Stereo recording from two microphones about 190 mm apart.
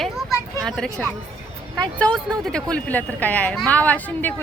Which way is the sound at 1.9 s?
5° left (ahead or behind).